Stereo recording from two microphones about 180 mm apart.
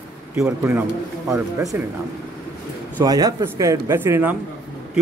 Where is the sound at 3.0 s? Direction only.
20° right (ahead or behind).